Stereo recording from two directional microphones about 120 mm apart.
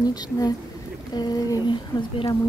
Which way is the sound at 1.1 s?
35° left (ahead or behind).